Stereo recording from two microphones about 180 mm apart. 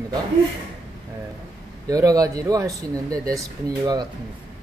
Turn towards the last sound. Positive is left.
turn(degrees=-20)  # may be behind; listen again after turning